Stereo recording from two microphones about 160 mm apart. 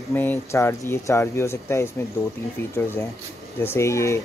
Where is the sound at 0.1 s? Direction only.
15° left (ahead or behind).